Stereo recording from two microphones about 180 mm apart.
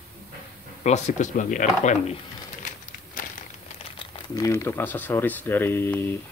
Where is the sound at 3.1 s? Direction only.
45° left (ahead or behind).